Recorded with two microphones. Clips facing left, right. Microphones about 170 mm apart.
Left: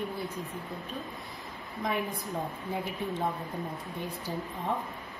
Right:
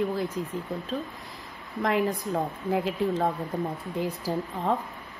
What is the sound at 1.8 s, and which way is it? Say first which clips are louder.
A woman's voice: right 7 dB; 85° right.